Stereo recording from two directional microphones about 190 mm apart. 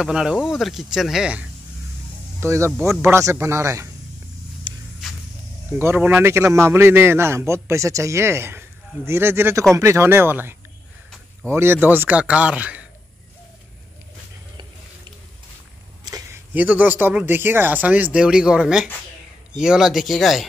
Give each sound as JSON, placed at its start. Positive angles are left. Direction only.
{"t": 0.0, "sound": "a man's voice", "side_deg": -5}
{"t": 5.8, "sound": "a man's voice", "side_deg": -10}
{"t": 16.0, "sound": "a sound", "side_deg": -20}
{"t": 16.5, "sound": "a man's voice", "side_deg": -10}